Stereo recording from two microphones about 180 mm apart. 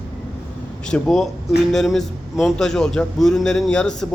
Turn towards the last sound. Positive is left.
turn(degrees=5)  # may be behind; listen again after turning